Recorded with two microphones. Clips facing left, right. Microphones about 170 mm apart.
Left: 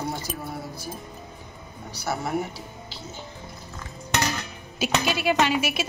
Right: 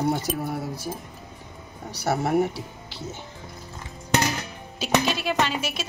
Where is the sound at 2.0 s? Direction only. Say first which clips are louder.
Right 5 dB; 75° right (ahead or behind).